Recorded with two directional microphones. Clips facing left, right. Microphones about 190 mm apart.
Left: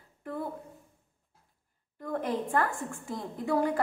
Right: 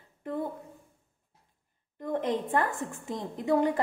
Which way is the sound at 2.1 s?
20° right (ahead or behind).